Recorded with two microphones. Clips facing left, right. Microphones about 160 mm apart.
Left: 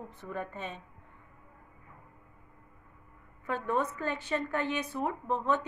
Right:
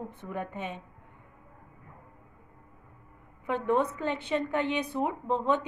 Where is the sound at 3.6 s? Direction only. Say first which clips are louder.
Right 4 dB; 20° right (ahead or behind).